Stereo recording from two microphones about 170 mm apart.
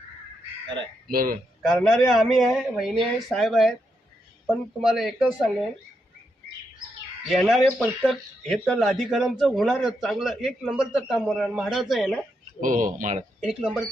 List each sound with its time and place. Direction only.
1.1 s speech: 55° right (ahead or behind)
1.6 s speech: 5° left (ahead or behind)
4.8 s speech: centre (ahead or behind)
7.3 s speech: centre (ahead or behind)
12.5 s speech: 50° right (ahead or behind)
13.4 s speech: centre (ahead or behind)